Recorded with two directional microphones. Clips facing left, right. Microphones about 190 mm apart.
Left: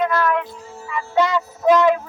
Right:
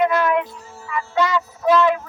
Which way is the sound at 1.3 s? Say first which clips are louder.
Left 1 dB; 15° left (ahead or behind).